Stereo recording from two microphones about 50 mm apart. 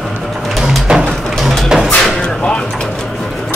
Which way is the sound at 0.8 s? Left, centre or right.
Centre.